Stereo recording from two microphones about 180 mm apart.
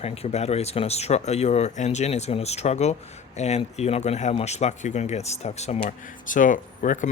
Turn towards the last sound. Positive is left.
turn(degrees=45)  # may be behind; listen again after turning